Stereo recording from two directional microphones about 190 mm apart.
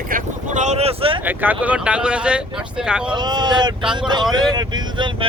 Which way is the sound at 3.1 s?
20° right (ahead or behind).